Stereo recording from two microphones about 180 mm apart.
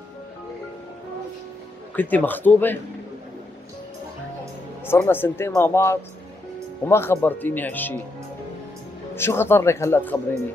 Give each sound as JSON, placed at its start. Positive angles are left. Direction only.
{"t": 2.0, "sound": "speech", "side_deg": 10}
{"t": 4.8, "sound": "speech", "side_deg": 15}
{"t": 9.1, "sound": "speech", "side_deg": 15}